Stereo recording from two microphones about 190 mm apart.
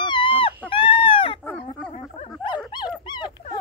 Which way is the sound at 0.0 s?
25° left (ahead or behind).